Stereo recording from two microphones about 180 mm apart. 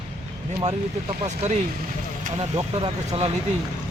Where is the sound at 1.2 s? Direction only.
40° right (ahead or behind).